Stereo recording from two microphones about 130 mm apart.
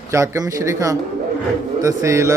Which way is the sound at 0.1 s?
25° right (ahead or behind).